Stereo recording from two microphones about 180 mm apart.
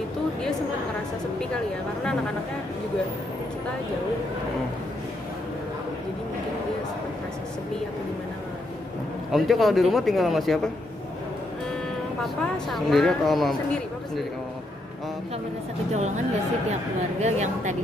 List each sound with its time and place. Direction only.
9.3 s speech: centre (ahead or behind)
12.2 s speech: centre (ahead or behind)
17.2 s speech: 40° right (ahead or behind)